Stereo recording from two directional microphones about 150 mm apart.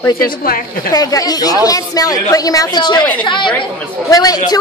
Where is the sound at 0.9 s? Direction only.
25° left (ahead or behind).